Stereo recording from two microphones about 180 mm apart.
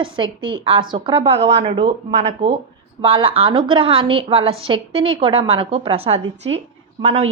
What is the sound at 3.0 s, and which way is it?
A woman's voice, 30° right (ahead or behind).